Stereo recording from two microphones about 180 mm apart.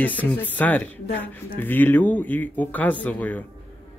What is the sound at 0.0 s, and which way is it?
Speech, 10° left (ahead or behind).